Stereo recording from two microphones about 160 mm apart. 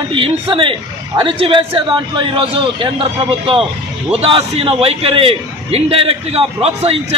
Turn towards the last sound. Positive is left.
turn(degrees=-35)  # may be behind; listen again after turning